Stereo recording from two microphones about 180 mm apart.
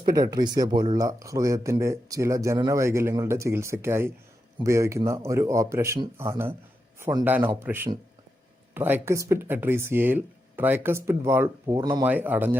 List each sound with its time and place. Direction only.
0.0 s speech: 20° right (ahead or behind)
12.0 s speech: 10° right (ahead or behind)